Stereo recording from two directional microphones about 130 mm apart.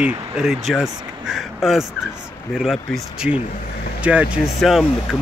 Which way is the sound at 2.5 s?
Centre (ahead or behind).